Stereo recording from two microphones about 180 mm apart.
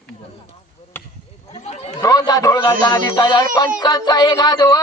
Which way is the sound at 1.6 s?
35° left (ahead or behind).